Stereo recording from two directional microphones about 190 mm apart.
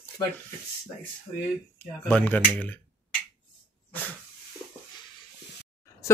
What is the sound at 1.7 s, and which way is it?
Speech, 10° left (ahead or behind).